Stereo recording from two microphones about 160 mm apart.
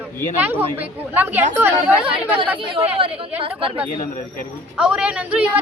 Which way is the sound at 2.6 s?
35° right (ahead or behind).